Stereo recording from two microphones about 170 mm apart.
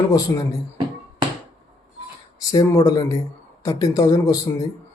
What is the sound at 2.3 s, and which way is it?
Speech, 20° left (ahead or behind).